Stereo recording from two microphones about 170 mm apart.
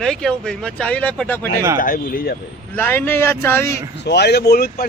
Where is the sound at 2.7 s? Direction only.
10° left (ahead or behind).